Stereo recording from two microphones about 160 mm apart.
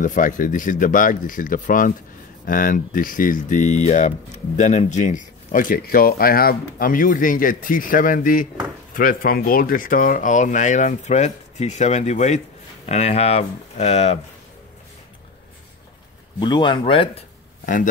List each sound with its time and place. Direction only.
0.0 s speech: 55° left (ahead or behind)
16.3 s speech: 30° left (ahead or behind)